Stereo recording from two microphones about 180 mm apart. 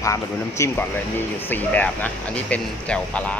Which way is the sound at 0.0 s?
15° left (ahead or behind).